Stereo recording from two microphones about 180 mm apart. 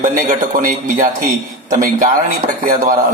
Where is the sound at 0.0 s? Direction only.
45° right (ahead or behind).